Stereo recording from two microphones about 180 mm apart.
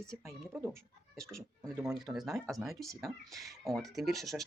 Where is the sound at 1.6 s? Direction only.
20° right (ahead or behind).